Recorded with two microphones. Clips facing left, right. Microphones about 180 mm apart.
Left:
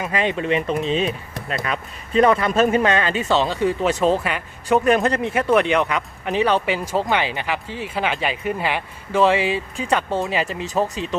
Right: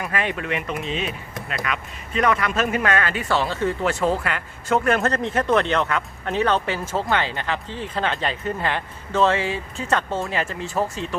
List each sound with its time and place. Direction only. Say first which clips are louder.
0.0 s speech: left 4 dB; 20° left (ahead or behind)